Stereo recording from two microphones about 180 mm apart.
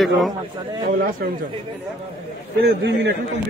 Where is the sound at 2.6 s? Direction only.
70° right (ahead or behind).